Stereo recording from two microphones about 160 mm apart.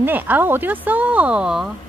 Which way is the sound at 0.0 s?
10° right (ahead or behind).